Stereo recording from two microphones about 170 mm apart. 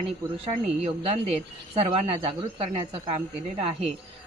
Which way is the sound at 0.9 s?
35° right (ahead or behind).